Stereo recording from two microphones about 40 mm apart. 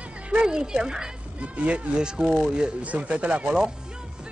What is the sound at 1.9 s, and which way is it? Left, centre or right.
Speech, right.